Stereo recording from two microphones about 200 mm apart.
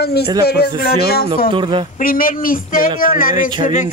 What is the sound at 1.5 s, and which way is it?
Speech, 25° right (ahead or behind).